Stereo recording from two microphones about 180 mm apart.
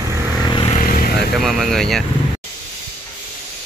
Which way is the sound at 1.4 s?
Centre (ahead or behind).